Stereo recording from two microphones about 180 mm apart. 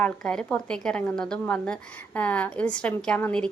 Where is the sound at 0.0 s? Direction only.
5° left (ahead or behind).